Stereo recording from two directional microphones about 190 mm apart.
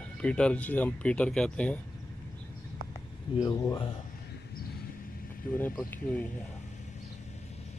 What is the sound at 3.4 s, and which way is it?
Speech, 20° left (ahead or behind).